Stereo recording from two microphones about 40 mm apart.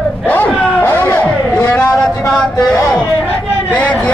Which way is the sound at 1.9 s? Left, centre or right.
Left.